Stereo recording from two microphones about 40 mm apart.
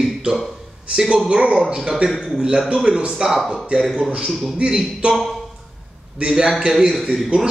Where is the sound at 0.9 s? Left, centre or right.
Right.